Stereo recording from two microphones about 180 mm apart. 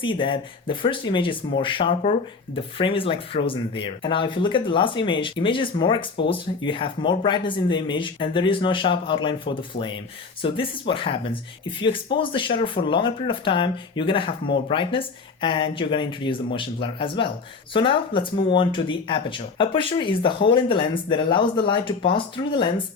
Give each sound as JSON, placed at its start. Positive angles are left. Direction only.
{"t": 0.0, "sound": "speech", "side_deg": 25}